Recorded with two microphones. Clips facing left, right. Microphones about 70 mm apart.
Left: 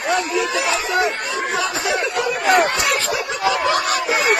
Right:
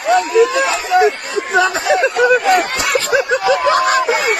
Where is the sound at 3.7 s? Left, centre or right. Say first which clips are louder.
Right 6 dB; right.